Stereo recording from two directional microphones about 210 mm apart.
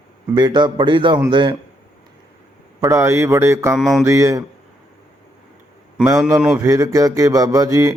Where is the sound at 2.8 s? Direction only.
15° right (ahead or behind).